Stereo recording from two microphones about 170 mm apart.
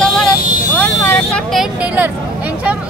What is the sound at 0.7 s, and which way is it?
Speech, 10° left (ahead or behind).